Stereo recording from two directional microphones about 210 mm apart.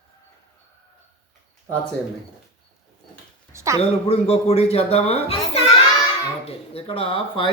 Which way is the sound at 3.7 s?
30° left (ahead or behind).